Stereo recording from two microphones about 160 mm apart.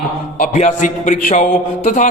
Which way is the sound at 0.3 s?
55° left (ahead or behind).